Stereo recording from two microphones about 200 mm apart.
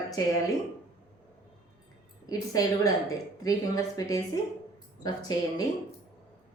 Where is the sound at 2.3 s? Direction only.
20° left (ahead or behind).